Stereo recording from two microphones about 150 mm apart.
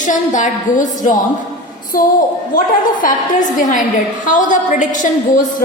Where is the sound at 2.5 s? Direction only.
65° left (ahead or behind).